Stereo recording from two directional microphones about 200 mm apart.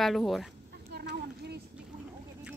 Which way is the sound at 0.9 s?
55° right (ahead or behind).